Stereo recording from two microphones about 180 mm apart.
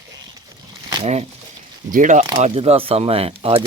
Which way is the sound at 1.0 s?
35° right (ahead or behind).